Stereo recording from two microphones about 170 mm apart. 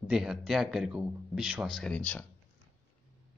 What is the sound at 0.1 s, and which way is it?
Speech, 5° right (ahead or behind).